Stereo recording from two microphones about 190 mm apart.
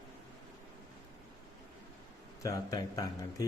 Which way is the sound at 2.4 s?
20° left (ahead or behind).